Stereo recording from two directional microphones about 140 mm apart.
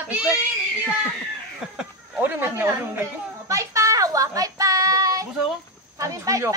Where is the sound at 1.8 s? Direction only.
10° right (ahead or behind).